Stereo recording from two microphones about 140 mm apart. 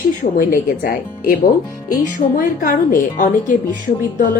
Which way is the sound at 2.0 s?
75° left (ahead or behind).